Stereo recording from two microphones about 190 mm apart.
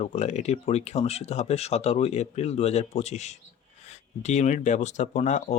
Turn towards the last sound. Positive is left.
turn(degrees=35)  # may be behind; listen again after turning